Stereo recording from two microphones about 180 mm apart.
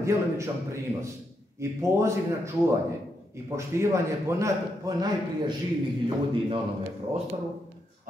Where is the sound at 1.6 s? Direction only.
15° right (ahead or behind).